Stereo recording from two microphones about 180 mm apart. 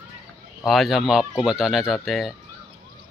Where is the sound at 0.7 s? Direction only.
Centre (ahead or behind).